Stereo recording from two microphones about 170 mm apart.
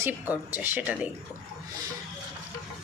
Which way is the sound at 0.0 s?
10° right (ahead or behind).